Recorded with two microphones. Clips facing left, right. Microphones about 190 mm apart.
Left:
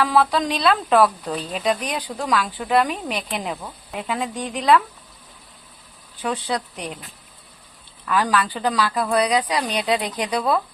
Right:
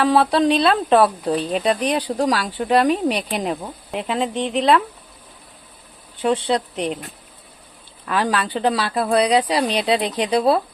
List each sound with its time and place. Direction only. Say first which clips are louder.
0.0 s speech: right 3 dB; 30° right (ahead or behind)
6.2 s speech: right 6 dB; 25° right (ahead or behind)
8.0 s speech: even; 25° right (ahead or behind)